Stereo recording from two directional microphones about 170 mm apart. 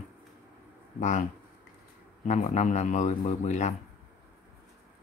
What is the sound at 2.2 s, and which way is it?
A man's voice, 40° left (ahead or behind).